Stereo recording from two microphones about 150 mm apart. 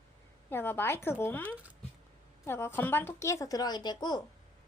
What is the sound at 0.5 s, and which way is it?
A woman's voice, 15° left (ahead or behind).